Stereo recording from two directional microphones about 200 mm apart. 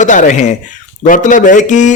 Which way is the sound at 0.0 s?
40° left (ahead or behind).